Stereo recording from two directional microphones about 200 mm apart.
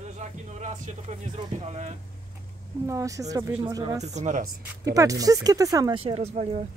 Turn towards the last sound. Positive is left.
turn(degrees=-35)  # may be behind; listen again after turning